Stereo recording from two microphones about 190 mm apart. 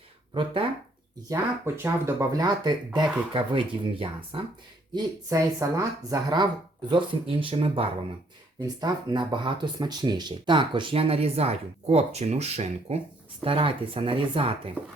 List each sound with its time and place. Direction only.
1.3 s speech: 15° right (ahead or behind)
4.9 s speech: 15° right (ahead or behind)